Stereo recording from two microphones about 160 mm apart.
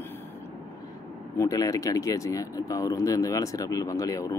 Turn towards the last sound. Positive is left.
turn(degrees=20)  # may be behind; listen again after turning